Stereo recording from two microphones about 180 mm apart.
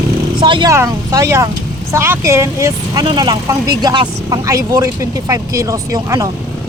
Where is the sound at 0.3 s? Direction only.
25° right (ahead or behind).